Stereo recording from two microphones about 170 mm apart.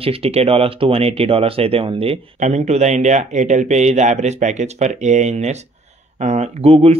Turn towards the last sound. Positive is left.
turn(degrees=-35)  # may be behind; listen again after turning